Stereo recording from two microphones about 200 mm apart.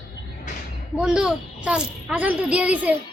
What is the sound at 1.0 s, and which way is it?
A child's voice, 5° right (ahead or behind).